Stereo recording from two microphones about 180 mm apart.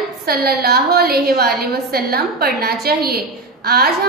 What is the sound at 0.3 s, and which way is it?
A woman's voice, 60° right (ahead or behind).